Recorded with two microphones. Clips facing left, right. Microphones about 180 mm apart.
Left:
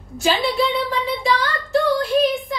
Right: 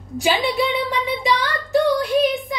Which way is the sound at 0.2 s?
15° right (ahead or behind).